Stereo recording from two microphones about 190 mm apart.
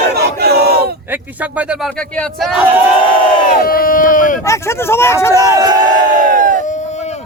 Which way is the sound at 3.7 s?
50° left (ahead or behind).